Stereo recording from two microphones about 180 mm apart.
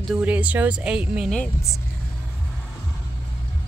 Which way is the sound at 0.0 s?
5° right (ahead or behind).